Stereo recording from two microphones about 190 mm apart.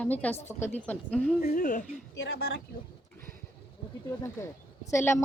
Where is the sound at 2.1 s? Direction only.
60° left (ahead or behind).